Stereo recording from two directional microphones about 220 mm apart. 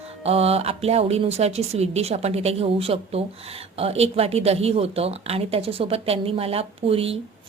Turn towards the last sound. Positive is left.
turn(degrees=-25)  # may be behind; listen again after turning